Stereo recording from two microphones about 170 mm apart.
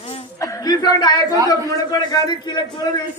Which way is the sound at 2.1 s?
25° left (ahead or behind).